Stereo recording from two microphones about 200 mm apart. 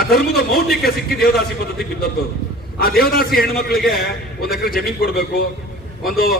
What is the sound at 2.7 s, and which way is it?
A man's voice, 50° left (ahead or behind).